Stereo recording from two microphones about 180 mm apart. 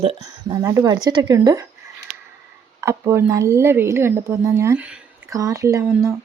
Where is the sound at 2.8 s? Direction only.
15° right (ahead or behind).